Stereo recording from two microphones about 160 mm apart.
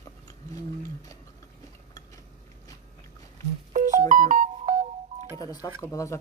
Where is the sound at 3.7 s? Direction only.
55° right (ahead or behind).